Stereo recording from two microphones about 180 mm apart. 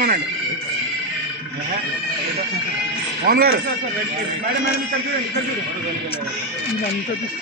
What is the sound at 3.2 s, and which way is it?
Speech, 55° right (ahead or behind).